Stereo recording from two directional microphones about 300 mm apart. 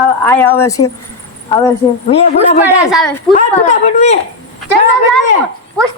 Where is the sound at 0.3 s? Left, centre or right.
Centre.